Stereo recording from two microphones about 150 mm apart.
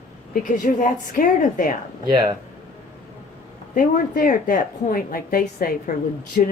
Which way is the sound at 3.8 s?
60° left (ahead or behind).